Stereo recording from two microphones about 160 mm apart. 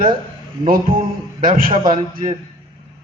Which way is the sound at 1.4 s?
60° right (ahead or behind).